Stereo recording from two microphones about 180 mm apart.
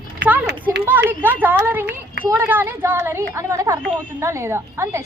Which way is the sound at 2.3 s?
10° right (ahead or behind).